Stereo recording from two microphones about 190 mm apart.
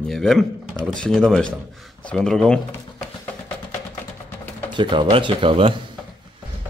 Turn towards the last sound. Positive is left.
turn(degrees=-25)  # may be behind; listen again after turning